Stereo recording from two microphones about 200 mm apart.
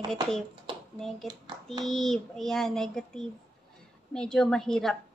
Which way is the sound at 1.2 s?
20° right (ahead or behind).